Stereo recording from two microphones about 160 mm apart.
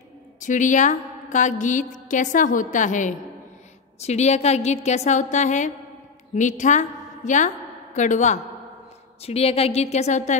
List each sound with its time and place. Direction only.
0.4 s a woman's voice: 50° left (ahead or behind)
9.2 s a woman's voice: 40° left (ahead or behind)